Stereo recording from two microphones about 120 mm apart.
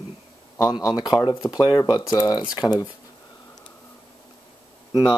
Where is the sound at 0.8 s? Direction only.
35° left (ahead or behind).